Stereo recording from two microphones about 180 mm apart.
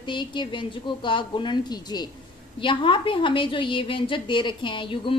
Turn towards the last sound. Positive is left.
turn(degrees=25)  # may be behind; listen again after turning